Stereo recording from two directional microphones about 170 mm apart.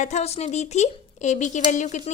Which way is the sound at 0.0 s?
40° left (ahead or behind).